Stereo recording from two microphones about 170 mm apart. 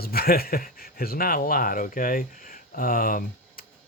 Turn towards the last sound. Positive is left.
turn(degrees=55)  # may be behind; listen again after turning